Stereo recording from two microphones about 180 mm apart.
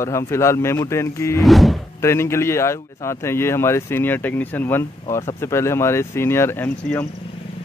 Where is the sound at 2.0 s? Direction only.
15° left (ahead or behind).